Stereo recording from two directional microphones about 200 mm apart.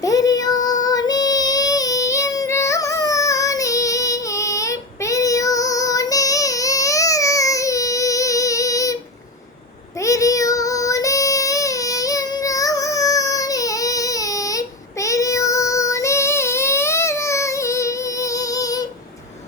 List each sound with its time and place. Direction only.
0.0 s child singing: 20° left (ahead or behind)
10.0 s child singing: 15° left (ahead or behind)